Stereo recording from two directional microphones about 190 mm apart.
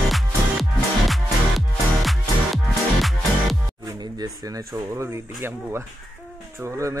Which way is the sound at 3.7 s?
20° right (ahead or behind).